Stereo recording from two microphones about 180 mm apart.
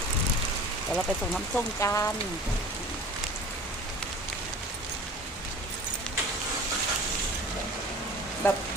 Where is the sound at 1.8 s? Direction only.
15° left (ahead or behind).